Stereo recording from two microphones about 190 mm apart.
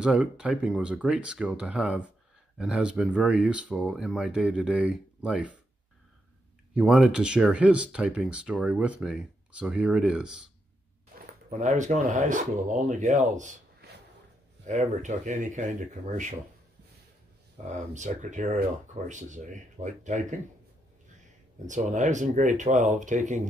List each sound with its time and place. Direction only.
0.0 s speech: 5° right (ahead or behind)
6.7 s speech: 5° right (ahead or behind)
11.6 s speech: 40° right (ahead or behind)
14.7 s speech: 40° right (ahead or behind)
17.6 s speech: 40° right (ahead or behind)
21.6 s speech: 40° right (ahead or behind)